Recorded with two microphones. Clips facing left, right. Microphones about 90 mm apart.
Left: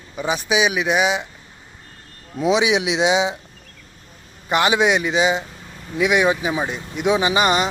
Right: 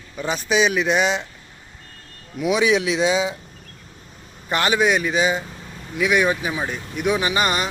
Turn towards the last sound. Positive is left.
turn(degrees=20)  # may be behind; listen again after turning